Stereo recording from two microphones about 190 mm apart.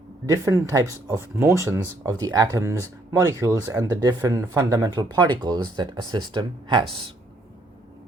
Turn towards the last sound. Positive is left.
turn(degrees=-25)  # may be behind; listen again after turning